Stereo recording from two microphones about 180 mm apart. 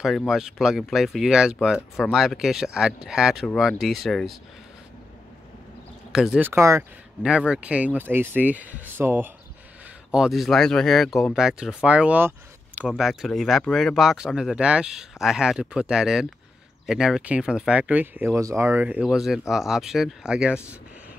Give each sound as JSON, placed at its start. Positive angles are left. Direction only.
{"t": 0.0, "sound": "speech", "side_deg": 0}
{"t": 6.1, "sound": "speech", "side_deg": -5}
{"t": 7.2, "sound": "speech", "side_deg": -5}